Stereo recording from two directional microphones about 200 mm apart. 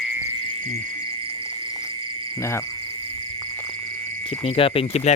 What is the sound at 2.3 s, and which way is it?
Speech, 15° left (ahead or behind).